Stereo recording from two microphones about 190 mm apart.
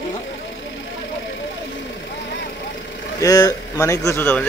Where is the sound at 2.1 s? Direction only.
65° left (ahead or behind).